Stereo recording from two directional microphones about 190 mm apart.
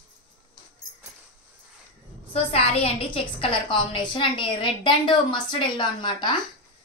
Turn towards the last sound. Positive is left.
turn(degrees=25)  # may be behind; listen again after turning